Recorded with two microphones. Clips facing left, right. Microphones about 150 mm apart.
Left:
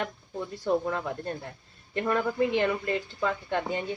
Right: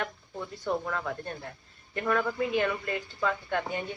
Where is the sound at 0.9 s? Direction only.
25° left (ahead or behind).